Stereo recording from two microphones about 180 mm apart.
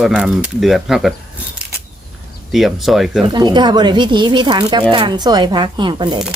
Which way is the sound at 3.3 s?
25° right (ahead or behind).